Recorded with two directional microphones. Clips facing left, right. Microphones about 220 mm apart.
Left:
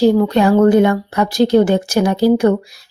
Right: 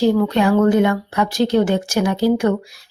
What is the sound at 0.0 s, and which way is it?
Speech, 35° left (ahead or behind).